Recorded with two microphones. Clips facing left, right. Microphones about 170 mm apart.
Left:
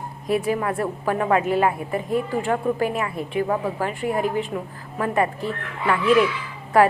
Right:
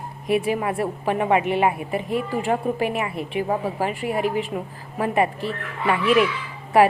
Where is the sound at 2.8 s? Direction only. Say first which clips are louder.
Even; 15° right (ahead or behind).